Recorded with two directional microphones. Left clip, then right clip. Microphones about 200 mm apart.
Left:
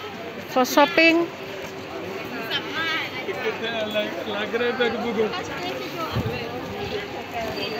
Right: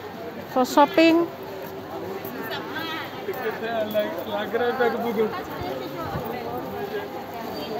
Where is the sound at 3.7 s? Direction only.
40° left (ahead or behind).